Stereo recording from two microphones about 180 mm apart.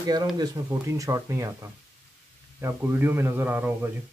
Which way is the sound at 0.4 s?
15° right (ahead or behind).